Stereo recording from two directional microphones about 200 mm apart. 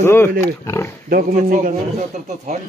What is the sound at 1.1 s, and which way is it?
Speech, 40° right (ahead or behind).